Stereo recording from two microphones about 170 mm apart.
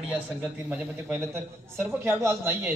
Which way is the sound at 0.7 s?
15° right (ahead or behind).